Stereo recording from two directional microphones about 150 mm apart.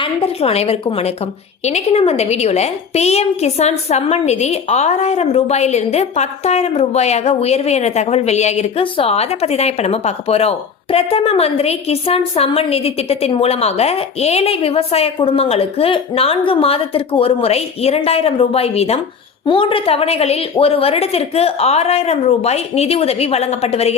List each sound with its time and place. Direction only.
0.0 s a woman's voice: 40° left (ahead or behind)